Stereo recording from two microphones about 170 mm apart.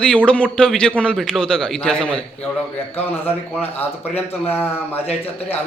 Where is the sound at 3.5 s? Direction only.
10° left (ahead or behind).